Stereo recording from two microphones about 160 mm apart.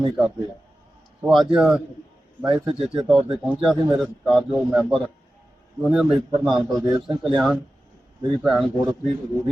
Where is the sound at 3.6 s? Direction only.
Centre (ahead or behind).